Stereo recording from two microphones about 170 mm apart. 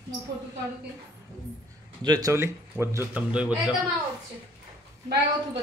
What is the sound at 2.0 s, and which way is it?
A man's voice, 20° right (ahead or behind).